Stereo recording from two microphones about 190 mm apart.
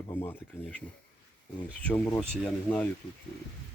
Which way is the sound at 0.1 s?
20° left (ahead or behind).